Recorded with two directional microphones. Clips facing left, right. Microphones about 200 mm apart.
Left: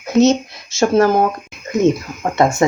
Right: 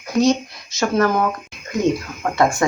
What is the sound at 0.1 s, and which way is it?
Speech, 25° left (ahead or behind).